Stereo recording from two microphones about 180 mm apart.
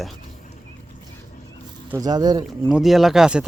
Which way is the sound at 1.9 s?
20° right (ahead or behind).